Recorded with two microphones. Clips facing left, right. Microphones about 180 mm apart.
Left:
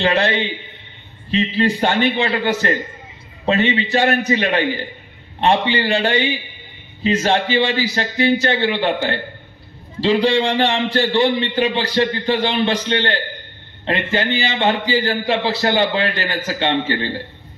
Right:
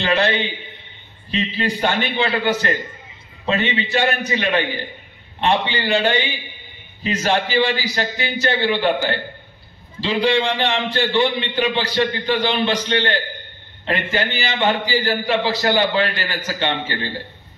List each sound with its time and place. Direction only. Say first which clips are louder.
0.0 s a man's voice: left 2 dB; 30° left (ahead or behind)
1.3 s a man's voice: left 5 dB; 30° left (ahead or behind)
10.2 s a man's voice: left 2 dB; 35° left (ahead or behind)